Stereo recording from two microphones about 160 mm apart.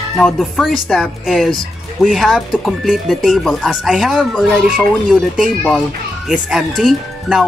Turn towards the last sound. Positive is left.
turn(degrees=0)  # may be behind; listen again after turning